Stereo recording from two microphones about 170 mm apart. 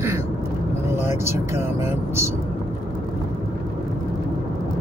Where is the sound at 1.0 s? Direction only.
15° right (ahead or behind).